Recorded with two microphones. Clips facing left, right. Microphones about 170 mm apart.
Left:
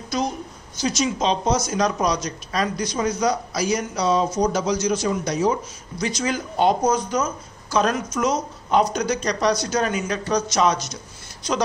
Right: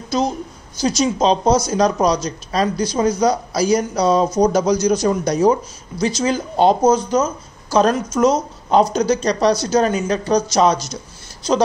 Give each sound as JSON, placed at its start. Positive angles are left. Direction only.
{"t": 0.7, "sound": "a man's voice", "side_deg": -35}